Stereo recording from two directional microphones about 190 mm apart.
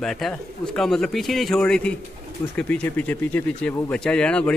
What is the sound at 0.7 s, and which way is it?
Speech, 5° left (ahead or behind).